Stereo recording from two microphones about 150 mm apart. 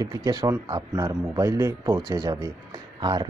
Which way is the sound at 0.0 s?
25° right (ahead or behind).